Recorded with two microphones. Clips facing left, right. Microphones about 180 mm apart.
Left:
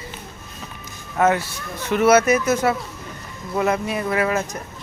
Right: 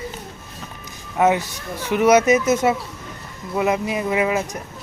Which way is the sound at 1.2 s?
15° right (ahead or behind).